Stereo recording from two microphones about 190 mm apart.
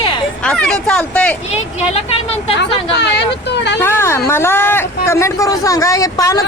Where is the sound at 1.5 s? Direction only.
35° left (ahead or behind).